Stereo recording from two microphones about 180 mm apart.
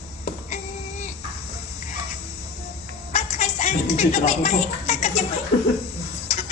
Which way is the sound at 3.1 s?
40° left (ahead or behind).